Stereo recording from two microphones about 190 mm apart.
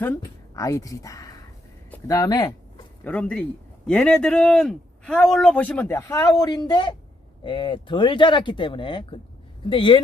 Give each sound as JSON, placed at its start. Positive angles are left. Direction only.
{"t": 0.0, "sound": "speech", "side_deg": 15}
{"t": 3.0, "sound": "a man's voice", "side_deg": 5}